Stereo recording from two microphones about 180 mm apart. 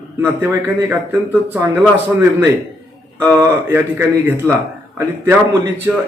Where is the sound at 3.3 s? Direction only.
15° right (ahead or behind).